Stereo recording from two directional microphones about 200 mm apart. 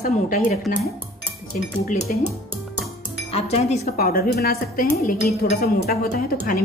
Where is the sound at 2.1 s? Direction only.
40° left (ahead or behind).